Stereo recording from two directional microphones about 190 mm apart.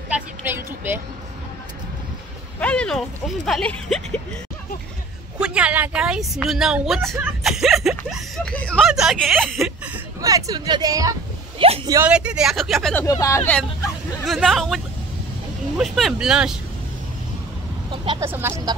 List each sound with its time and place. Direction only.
0.1 s a sound: 10° right (ahead or behind)
2.6 s speech: 5° left (ahead or behind)
5.4 s speech: 5° right (ahead or behind)
10.2 s speech: 20° right (ahead or behind)
11.6 s speech: 30° right (ahead or behind)
11.9 s speech: 10° right (ahead or behind)
13.0 s speech: 15° left (ahead or behind)
14.2 s speech: centre (ahead or behind)
15.8 s speech: centre (ahead or behind)
17.9 s vehicle: 25° right (ahead or behind)
18.2 s speech: 15° right (ahead or behind)